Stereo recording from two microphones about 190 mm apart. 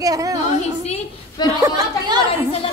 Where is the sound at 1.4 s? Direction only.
15° right (ahead or behind).